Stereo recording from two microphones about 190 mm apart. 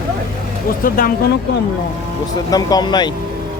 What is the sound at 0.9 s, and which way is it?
Speech, 45° left (ahead or behind).